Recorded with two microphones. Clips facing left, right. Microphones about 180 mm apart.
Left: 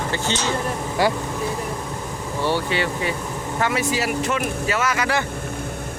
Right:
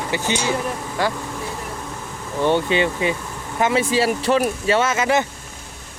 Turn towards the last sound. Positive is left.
turn(degrees=-20)  # may be behind; listen again after turning